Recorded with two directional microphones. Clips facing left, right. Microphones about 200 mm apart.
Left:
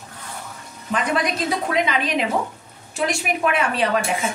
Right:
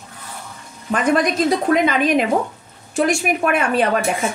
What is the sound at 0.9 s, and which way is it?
A woman's voice, 50° right (ahead or behind).